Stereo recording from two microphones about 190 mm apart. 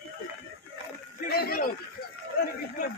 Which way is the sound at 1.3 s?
55° left (ahead or behind).